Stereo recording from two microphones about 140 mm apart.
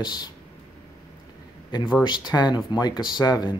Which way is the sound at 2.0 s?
30° left (ahead or behind).